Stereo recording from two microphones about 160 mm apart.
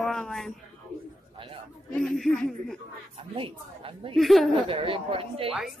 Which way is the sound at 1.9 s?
Centre (ahead or behind).